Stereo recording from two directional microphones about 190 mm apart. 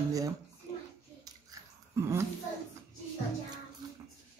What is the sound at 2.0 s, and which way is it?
Speech, 15° right (ahead or behind).